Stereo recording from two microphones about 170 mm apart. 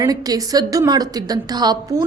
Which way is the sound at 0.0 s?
20° right (ahead or behind).